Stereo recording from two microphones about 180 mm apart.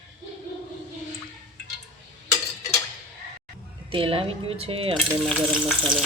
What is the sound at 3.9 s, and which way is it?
Speech, 30° right (ahead or behind).